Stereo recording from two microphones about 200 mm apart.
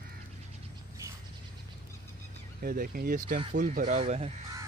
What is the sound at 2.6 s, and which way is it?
Speech, 45° right (ahead or behind).